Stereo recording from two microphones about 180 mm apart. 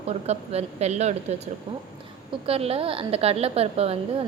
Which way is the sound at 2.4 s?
35° right (ahead or behind).